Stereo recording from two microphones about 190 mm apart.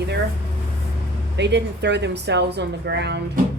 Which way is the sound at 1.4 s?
65° right (ahead or behind).